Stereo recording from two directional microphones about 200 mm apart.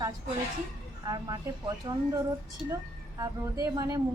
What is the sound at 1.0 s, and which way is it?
Speech, 20° right (ahead or behind).